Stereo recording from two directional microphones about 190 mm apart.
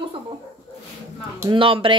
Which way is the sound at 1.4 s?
25° right (ahead or behind).